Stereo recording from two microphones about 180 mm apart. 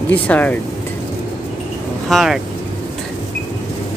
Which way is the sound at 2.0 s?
Centre (ahead or behind).